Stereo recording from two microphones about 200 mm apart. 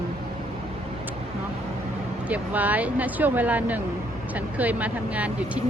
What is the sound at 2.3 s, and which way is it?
Speech, 10° right (ahead or behind).